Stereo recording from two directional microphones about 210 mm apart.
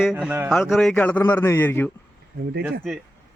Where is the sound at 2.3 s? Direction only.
50° right (ahead or behind).